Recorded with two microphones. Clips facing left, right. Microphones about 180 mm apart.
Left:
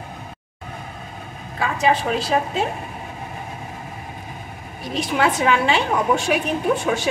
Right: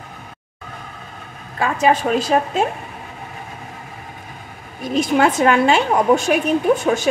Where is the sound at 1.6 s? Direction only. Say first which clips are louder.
Right 3 dB; 45° right (ahead or behind).